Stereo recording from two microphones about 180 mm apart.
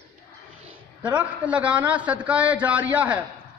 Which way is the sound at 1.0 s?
10° right (ahead or behind).